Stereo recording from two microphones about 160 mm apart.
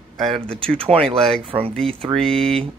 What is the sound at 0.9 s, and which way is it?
Speech, 35° right (ahead or behind).